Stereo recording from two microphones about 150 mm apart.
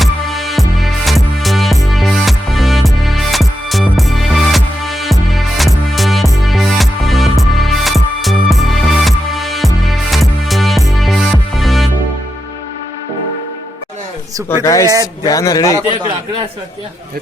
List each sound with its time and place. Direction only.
0.0 s music: centre (ahead or behind)
14.6 s speech: 20° left (ahead or behind)